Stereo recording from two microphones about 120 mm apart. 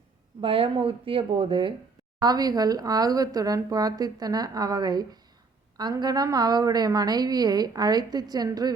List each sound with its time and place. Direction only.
0.4 s speech: 50° right (ahead or behind)
2.2 s speech: 35° right (ahead or behind)